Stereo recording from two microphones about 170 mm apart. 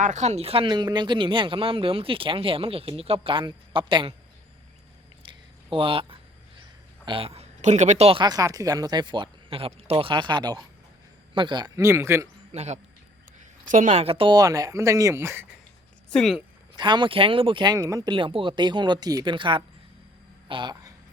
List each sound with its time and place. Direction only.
0.0 s speech: 45° right (ahead or behind)
5.2 s a sound: 30° right (ahead or behind)
7.0 s a man's voice: 30° right (ahead or behind); by 12.3 s 15° right (ahead or behind)
12.5 s speech: 40° right (ahead or behind); by 15.4 s 15° right (ahead or behind)
16.1 s speech: centre (ahead or behind)
16.7 s speech: 25° right (ahead or behind)